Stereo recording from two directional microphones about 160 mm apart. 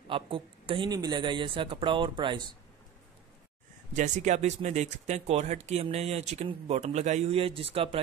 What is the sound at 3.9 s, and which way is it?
Speech, 50° right (ahead or behind).